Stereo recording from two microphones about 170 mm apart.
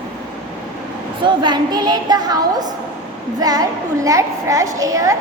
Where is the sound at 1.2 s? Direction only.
25° right (ahead or behind).